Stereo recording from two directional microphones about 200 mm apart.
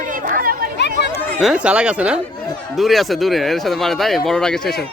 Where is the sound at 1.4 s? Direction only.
5° right (ahead or behind).